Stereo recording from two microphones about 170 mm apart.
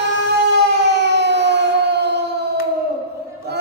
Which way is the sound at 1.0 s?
90° right.